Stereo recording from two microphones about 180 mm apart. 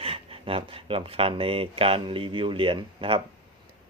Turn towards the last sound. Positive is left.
turn(degrees=-30)  # may be behind; listen again after turning